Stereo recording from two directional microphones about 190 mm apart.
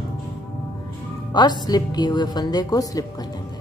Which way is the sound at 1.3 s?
20° left (ahead or behind).